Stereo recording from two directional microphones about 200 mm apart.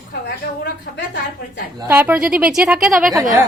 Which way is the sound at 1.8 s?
10° right (ahead or behind).